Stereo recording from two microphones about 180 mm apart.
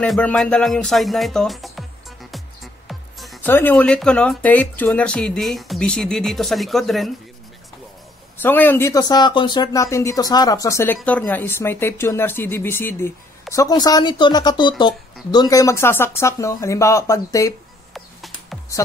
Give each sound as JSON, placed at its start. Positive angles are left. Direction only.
{"t": 0.0, "sound": "music", "side_deg": 5}
{"t": 3.4, "sound": "speech", "side_deg": 10}
{"t": 8.4, "sound": "speech", "side_deg": 10}
{"t": 17.9, "sound": "music", "side_deg": 0}